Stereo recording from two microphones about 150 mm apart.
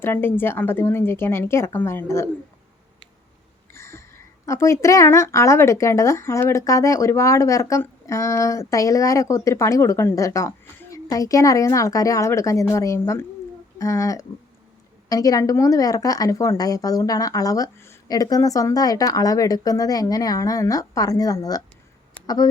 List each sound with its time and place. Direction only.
0.0 s speech: 15° left (ahead or behind)
3.7 s a woman's voice: 15° left (ahead or behind)
22.1 s a sound: 25° left (ahead or behind)